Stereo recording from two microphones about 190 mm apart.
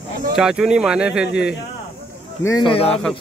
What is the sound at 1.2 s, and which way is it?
Speech, 60° left (ahead or behind).